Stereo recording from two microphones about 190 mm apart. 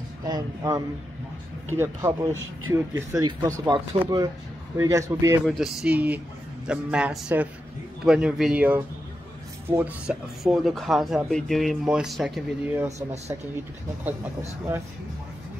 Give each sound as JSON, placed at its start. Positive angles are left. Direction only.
{"t": 0.2, "sound": "speech", "side_deg": -20}
{"t": 5.5, "sound": "speech", "side_deg": 0}